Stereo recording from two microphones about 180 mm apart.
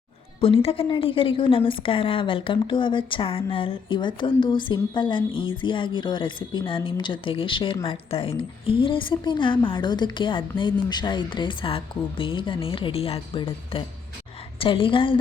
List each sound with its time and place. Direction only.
0.4 s a woman's voice: 30° left (ahead or behind)